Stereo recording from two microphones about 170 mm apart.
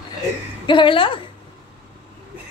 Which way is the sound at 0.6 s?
30° left (ahead or behind).